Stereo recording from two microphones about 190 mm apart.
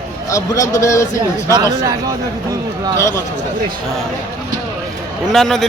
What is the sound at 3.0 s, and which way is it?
Speech, 15° left (ahead or behind).